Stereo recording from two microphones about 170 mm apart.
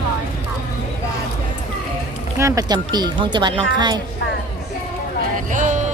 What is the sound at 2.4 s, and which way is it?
Speech, 20° right (ahead or behind).